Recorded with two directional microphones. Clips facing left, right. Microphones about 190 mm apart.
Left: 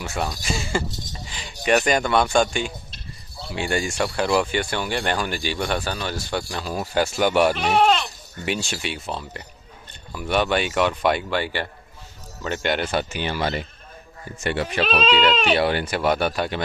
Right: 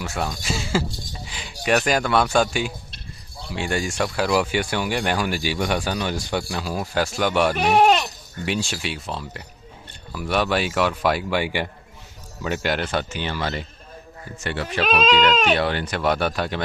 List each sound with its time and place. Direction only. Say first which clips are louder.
0.0 s speech: even; centre (ahead or behind)
7.6 s speech: right 2 dB; 10° right (ahead or behind)
12.4 s speech: even; centre (ahead or behind)
12.8 s speech: left 1 dB; 10° left (ahead or behind)